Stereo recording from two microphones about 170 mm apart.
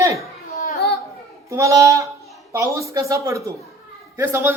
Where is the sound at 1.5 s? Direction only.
20° right (ahead or behind).